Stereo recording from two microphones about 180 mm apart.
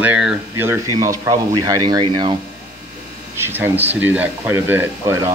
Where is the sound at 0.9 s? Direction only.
20° right (ahead or behind).